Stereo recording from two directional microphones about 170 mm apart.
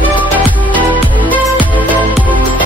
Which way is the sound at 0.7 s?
10° left (ahead or behind).